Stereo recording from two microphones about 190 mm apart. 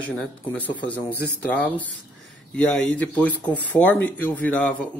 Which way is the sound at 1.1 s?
60° left (ahead or behind).